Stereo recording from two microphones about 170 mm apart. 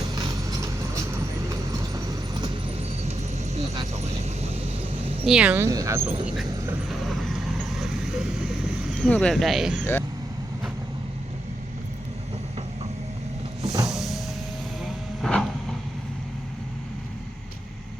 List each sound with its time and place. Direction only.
0.1 s vehicle: 20° right (ahead or behind)
3.0 s vehicle: 40° right (ahead or behind)
5.2 s speech: 5° right (ahead or behind)
7.8 s vehicle: 5° right (ahead or behind)
8.9 s speech: 5° left (ahead or behind)
13.8 s vehicle: centre (ahead or behind)